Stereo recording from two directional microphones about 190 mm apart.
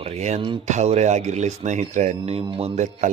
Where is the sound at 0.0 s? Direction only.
35° right (ahead or behind).